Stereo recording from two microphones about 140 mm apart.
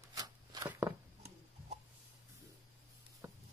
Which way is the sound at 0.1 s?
25° right (ahead or behind).